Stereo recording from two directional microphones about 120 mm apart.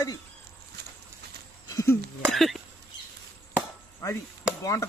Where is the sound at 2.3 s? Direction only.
Centre (ahead or behind).